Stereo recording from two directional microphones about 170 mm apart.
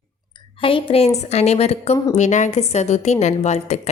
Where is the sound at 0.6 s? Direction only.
30° left (ahead or behind).